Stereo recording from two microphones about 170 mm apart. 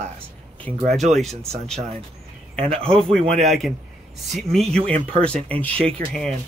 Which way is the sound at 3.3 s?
Centre (ahead or behind).